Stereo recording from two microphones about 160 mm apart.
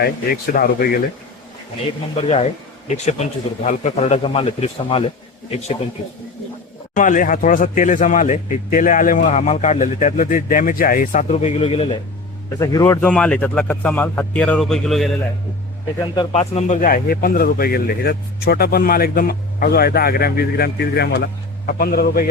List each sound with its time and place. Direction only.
0.0 s speech: 70° left (ahead or behind)
2.3 s speech: 45° left (ahead or behind)
6.9 s speech: 55° left (ahead or behind); by 11.9 s 35° left (ahead or behind)
12.5 s a man's voice: 20° left (ahead or behind); by 15.1 s centre (ahead or behind)
16.3 s speech: 40° left (ahead or behind)
16.8 s speech: 60° left (ahead or behind); by 21.2 s 90° left
21.7 s speech: 65° left (ahead or behind)